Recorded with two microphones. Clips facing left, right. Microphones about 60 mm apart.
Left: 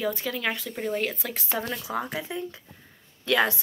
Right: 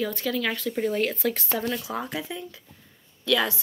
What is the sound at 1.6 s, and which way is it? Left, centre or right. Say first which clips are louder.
Speech: right 1 dB; left.